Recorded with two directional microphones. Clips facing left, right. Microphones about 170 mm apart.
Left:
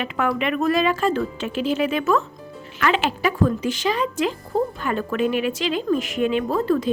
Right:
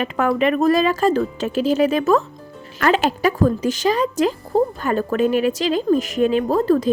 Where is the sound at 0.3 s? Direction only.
40° right (ahead or behind).